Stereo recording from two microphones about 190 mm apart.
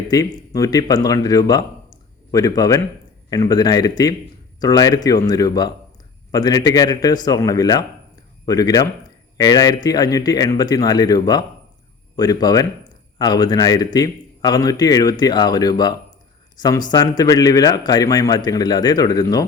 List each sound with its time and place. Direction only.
0.1 s a man's voice: 20° left (ahead or behind)